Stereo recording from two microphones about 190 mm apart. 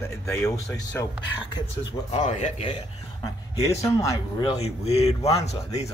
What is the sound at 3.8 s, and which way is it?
Speech, 20° left (ahead or behind).